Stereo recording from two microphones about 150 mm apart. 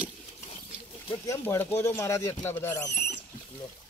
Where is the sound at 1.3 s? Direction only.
20° left (ahead or behind).